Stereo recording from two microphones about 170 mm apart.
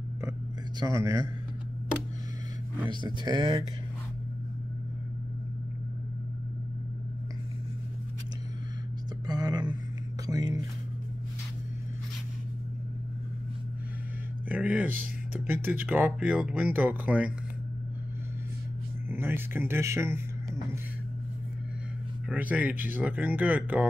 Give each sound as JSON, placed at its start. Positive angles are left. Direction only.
{"t": 0.7, "sound": "speech", "side_deg": -20}
{"t": 2.9, "sound": "speech", "side_deg": -25}
{"t": 9.2, "sound": "a sound", "side_deg": -25}
{"t": 10.2, "sound": "music", "side_deg": -20}
{"t": 14.5, "sound": "speech", "side_deg": -10}
{"t": 19.0, "sound": "speech", "side_deg": -15}
{"t": 22.3, "sound": "speech", "side_deg": -10}